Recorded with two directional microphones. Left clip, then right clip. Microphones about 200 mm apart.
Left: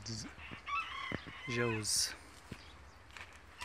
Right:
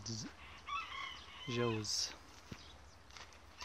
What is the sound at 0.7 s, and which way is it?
Chicken, 5° left (ahead or behind).